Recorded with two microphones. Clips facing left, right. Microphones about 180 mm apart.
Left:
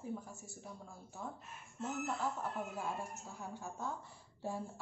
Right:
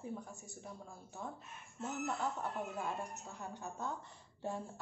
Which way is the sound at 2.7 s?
5° left (ahead or behind).